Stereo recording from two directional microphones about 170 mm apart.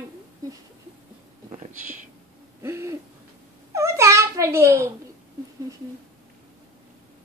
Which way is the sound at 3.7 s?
15° right (ahead or behind).